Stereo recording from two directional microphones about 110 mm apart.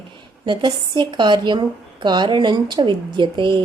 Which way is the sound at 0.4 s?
45° right (ahead or behind).